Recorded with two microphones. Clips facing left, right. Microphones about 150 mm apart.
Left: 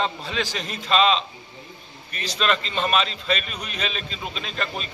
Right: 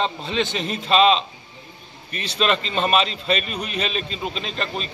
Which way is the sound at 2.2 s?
35° right (ahead or behind).